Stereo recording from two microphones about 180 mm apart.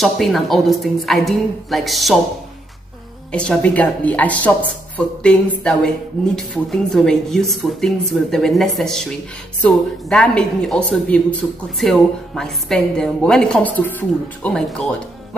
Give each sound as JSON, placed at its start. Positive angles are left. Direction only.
{"t": 0.0, "sound": "a woman's voice", "side_deg": 0}
{"t": 3.3, "sound": "a woman's voice", "side_deg": 5}